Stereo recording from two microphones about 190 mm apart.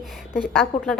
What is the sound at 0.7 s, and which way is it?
Speech, 40° left (ahead or behind).